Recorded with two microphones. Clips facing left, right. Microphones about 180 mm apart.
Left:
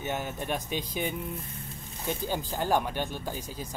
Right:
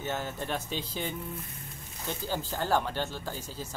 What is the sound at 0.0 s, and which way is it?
Speech, 15° left (ahead or behind).